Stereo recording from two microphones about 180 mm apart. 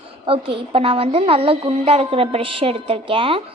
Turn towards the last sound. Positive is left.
turn(degrees=-30)  # may be behind; listen again after turning